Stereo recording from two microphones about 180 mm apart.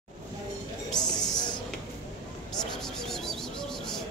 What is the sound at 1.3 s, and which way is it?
Music, 25° left (ahead or behind).